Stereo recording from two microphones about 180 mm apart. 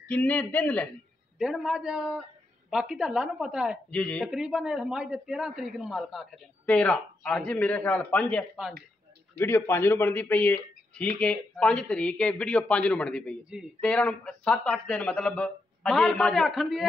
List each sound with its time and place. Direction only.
0.1 s a man's voice: 10° left (ahead or behind)
3.9 s a man's voice: 5° left (ahead or behind)
9.4 s a man's voice: 15° left (ahead or behind)